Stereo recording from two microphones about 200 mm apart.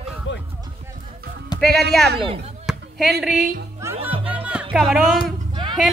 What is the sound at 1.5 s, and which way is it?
Music, 20° left (ahead or behind).